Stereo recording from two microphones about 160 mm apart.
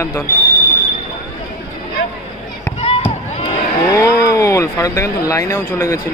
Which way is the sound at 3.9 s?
20° left (ahead or behind).